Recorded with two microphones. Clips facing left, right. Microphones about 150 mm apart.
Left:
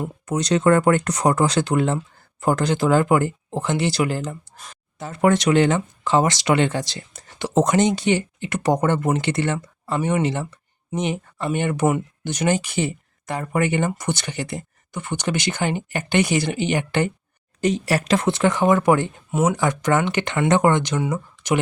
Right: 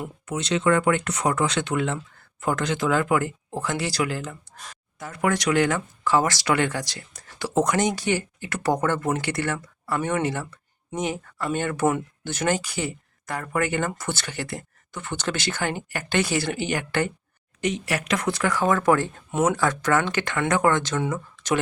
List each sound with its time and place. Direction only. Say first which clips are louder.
0.0 s speech: left 5 dB; 40° left (ahead or behind); by 17.1 s 20° left (ahead or behind)
17.6 s speech: left 5 dB; 35° left (ahead or behind); by 21.6 s 15° left (ahead or behind)